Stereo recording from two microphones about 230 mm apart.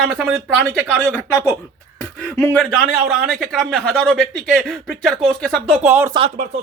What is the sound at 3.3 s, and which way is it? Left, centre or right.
Speech, centre.